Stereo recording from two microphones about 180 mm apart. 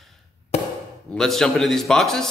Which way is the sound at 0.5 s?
35° left (ahead or behind).